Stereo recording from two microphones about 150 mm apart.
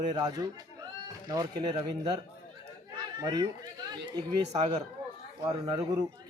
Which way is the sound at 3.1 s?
30° right (ahead or behind).